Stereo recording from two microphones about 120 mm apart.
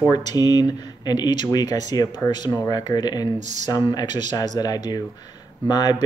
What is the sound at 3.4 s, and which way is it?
Speech, 75° right (ahead or behind).